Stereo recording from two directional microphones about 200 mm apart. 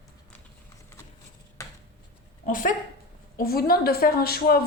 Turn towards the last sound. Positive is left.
turn(degrees=50)  # may be behind; listen again after turning